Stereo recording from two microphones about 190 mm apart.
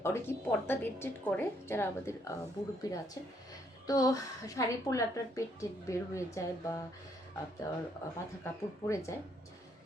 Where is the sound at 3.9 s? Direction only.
20° left (ahead or behind).